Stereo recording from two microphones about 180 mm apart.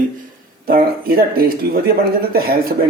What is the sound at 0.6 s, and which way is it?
Speech, 55° right (ahead or behind).